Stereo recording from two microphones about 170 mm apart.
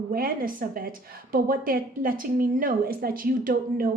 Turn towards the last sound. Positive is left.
turn(degrees=-55)  # may be behind; listen again after turning